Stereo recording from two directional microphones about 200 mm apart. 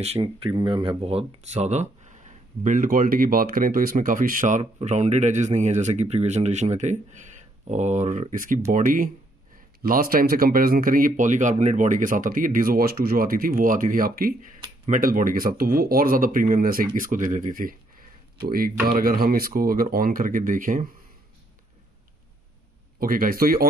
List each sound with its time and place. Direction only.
0.0 s speech: 30° right (ahead or behind)
22.9 s speech: 45° right (ahead or behind)